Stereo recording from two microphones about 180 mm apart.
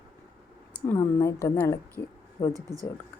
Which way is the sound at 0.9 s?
15° left (ahead or behind).